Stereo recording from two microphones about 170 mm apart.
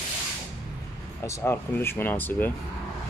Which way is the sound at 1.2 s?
15° left (ahead or behind).